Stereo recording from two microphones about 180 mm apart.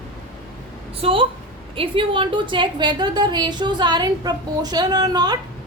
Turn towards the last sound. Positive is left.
turn(degrees=-20)  # may be behind; listen again after turning